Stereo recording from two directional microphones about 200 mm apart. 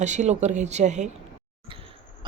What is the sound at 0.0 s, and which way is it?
Speech, 35° right (ahead or behind).